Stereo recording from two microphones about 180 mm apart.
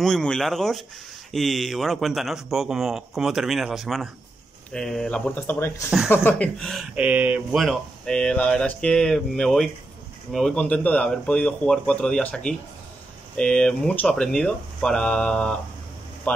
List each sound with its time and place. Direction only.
0.0 s speech: 5° left (ahead or behind)